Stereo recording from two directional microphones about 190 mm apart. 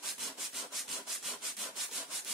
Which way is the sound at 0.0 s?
Centre (ahead or behind).